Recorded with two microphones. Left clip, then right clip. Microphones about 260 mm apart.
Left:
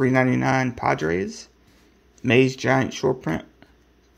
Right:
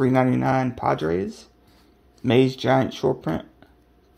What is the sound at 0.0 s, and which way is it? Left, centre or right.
Speech, centre.